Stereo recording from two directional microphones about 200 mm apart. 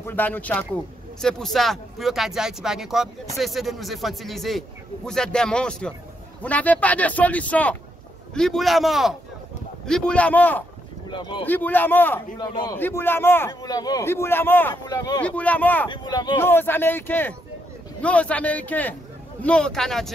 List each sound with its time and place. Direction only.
0.0 s a man's voice: 10° left (ahead or behind)
11.1 s speech: 25° left (ahead or behind)
11.4 s a man's voice: 10° left (ahead or behind)
15.9 s a man's voice: 20° left (ahead or behind); by 20.1 s centre (ahead or behind)